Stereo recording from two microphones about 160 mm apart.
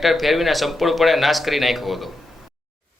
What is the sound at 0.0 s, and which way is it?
A man's voice, centre (ahead or behind).